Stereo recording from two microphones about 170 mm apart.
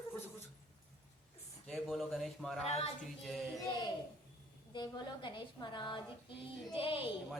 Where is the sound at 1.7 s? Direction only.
Centre (ahead or behind).